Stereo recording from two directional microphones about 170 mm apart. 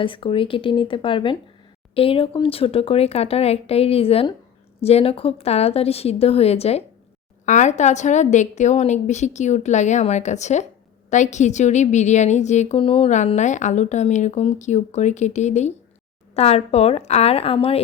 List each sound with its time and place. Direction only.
0.0 s a woman's voice: 30° left (ahead or behind)